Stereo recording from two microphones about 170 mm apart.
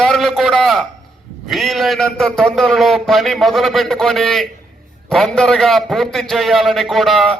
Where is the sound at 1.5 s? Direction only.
Centre (ahead or behind).